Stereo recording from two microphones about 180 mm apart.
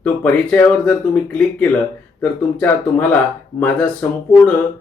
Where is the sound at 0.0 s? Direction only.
10° left (ahead or behind).